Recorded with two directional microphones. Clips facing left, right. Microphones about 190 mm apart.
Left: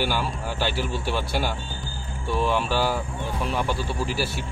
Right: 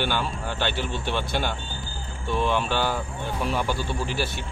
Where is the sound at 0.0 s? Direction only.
5° left (ahead or behind).